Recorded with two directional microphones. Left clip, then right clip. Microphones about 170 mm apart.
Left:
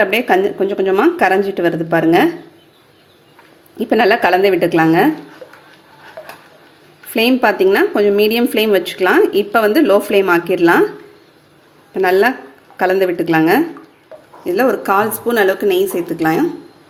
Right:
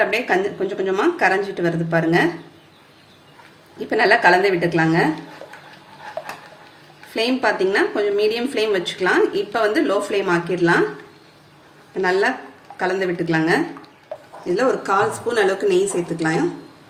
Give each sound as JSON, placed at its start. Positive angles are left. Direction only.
{"t": 0.0, "sound": "speech", "side_deg": 60}
{"t": 3.8, "sound": "speech", "side_deg": 60}
{"t": 7.1, "sound": "speech", "side_deg": 65}
{"t": 11.9, "sound": "speech", "side_deg": 65}